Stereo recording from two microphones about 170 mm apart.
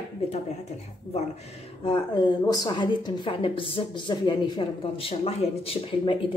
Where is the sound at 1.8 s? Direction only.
30° left (ahead or behind).